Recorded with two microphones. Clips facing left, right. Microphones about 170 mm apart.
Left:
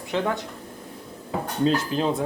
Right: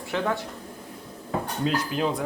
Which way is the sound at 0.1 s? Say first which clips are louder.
Left 2 dB; 20° left (ahead or behind).